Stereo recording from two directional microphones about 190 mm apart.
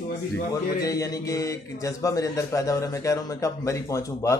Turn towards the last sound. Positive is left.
turn(degrees=15)  # may be behind; listen again after turning